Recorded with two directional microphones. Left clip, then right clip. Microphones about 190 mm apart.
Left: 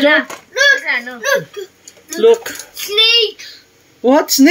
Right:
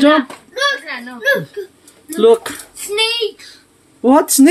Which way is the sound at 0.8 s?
30° right (ahead or behind).